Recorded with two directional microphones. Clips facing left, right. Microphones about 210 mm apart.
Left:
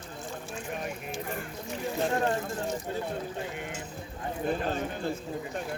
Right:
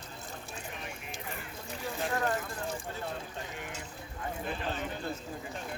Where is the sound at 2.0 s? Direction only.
25° left (ahead or behind).